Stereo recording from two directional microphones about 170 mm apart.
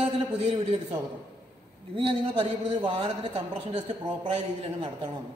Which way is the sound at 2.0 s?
30° right (ahead or behind).